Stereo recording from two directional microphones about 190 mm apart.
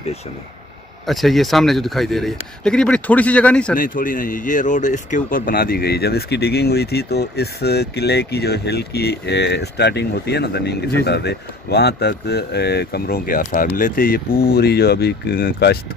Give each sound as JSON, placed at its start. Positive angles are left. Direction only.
{"t": 1.0, "sound": "a man's voice", "side_deg": 0}
{"t": 3.7, "sound": "speech", "side_deg": 45}